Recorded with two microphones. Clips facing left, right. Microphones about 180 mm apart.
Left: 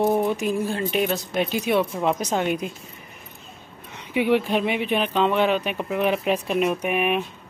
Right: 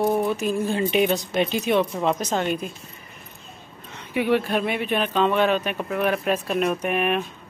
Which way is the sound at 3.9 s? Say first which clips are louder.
Left 1 dB; 15° left (ahead or behind).